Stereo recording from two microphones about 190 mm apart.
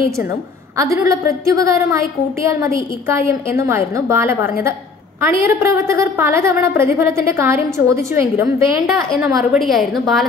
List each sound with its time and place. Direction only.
0.7 s a woman's voice: 15° right (ahead or behind)
9.6 s a woman's voice: centre (ahead or behind)